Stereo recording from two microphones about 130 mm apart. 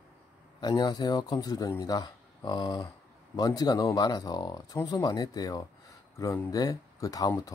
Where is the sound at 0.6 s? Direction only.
30° left (ahead or behind).